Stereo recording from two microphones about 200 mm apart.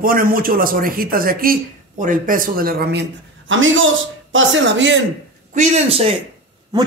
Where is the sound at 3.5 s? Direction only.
75° right (ahead or behind).